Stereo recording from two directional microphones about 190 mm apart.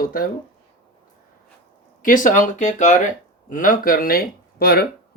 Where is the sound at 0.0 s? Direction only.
50° left (ahead or behind).